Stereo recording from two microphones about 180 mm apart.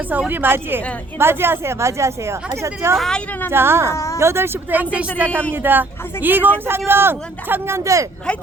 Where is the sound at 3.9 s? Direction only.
15° left (ahead or behind).